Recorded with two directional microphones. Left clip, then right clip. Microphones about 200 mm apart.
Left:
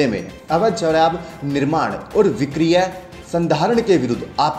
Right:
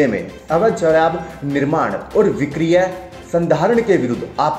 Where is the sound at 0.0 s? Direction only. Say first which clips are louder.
Right 3 dB; 20° left (ahead or behind).